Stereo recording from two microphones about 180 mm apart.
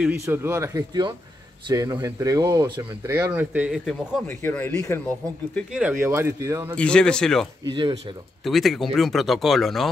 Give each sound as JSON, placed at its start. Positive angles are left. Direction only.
{"t": 0.0, "sound": "speech", "side_deg": -15}
{"t": 4.3, "sound": "speech", "side_deg": 10}
{"t": 5.7, "sound": "speech", "side_deg": -5}
{"t": 6.8, "sound": "speech", "side_deg": 5}
{"t": 7.7, "sound": "speech", "side_deg": -25}
{"t": 8.5, "sound": "speech", "side_deg": 0}